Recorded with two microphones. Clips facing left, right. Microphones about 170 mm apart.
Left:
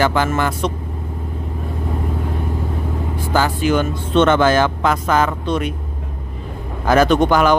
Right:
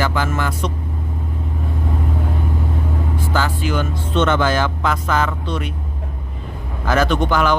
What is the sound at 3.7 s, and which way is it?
Speech, 55° left (ahead or behind).